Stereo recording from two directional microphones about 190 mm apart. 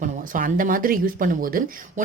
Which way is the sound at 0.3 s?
45° right (ahead or behind).